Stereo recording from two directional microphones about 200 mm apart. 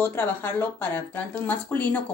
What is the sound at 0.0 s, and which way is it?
Speech, 10° left (ahead or behind).